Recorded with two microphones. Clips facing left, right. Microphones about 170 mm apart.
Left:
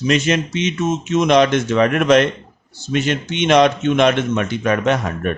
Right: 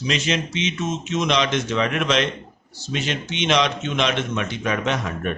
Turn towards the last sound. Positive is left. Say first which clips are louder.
# left 6 dB
turn(degrees=50)  # may be behind; listen again after turning